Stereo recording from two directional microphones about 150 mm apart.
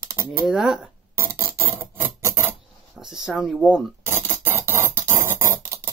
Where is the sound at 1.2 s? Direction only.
20° right (ahead or behind).